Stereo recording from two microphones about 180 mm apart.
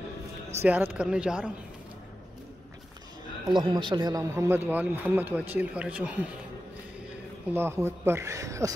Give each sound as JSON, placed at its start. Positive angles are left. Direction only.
{"t": 0.6, "sound": "speech", "side_deg": -10}
{"t": 3.5, "sound": "a man's voice", "side_deg": -25}
{"t": 7.5, "sound": "speech", "side_deg": -15}